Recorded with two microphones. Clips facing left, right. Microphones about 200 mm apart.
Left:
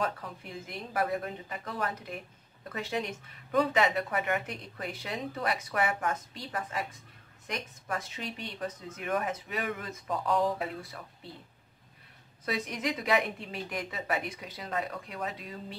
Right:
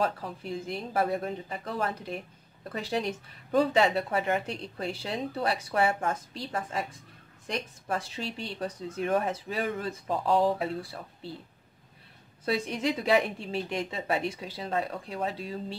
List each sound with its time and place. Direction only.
0.0 s speech: 30° right (ahead or behind)
12.4 s a woman's voice: 30° right (ahead or behind)